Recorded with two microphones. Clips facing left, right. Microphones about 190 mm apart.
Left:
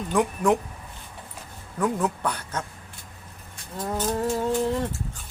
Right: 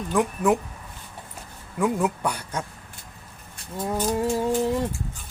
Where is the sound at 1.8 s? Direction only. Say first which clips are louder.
Right 2 dB; 10° right (ahead or behind).